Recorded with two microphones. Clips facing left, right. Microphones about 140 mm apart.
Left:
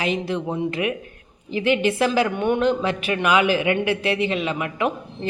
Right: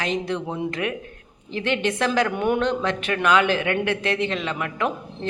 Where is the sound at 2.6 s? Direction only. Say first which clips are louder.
Left 2 dB; 5° left (ahead or behind).